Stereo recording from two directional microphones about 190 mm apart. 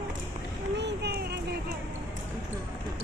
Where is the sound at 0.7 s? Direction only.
65° right (ahead or behind).